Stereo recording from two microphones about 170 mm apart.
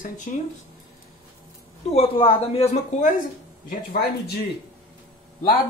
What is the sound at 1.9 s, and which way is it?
Speech, 35° left (ahead or behind).